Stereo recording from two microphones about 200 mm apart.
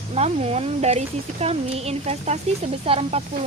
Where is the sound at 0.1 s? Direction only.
30° right (ahead or behind).